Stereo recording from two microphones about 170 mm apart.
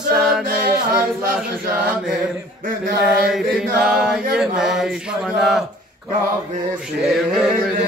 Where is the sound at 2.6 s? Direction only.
55° right (ahead or behind).